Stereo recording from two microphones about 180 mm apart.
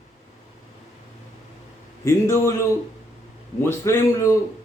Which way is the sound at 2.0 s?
15° left (ahead or behind).